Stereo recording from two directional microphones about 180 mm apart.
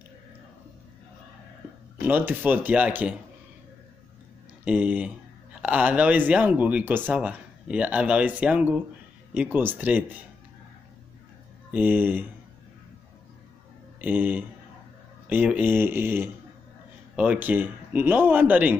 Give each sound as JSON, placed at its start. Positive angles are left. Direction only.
{"t": 2.0, "sound": "speech", "side_deg": -10}
{"t": 4.6, "sound": "speech", "side_deg": -5}
{"t": 11.7, "sound": "speech", "side_deg": -10}
{"t": 14.0, "sound": "speech", "side_deg": -10}